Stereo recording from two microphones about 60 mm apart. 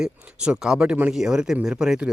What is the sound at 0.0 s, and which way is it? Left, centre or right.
Speech, centre.